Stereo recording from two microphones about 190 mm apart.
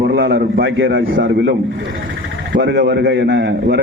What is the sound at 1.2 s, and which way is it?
A man's voice, 60° right (ahead or behind).